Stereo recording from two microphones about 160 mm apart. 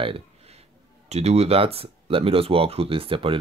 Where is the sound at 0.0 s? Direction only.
35° right (ahead or behind).